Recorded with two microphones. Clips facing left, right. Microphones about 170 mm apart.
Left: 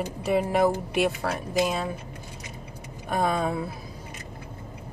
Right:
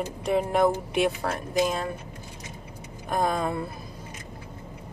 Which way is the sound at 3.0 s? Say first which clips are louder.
Left 1 dB; centre (ahead or behind).